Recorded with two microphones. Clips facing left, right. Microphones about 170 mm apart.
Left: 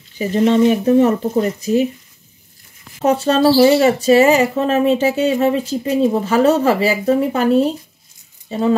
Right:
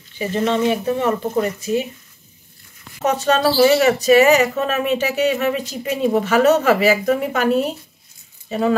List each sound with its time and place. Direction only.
0.2 s speech: 40° left (ahead or behind)
3.0 s speech: 30° left (ahead or behind)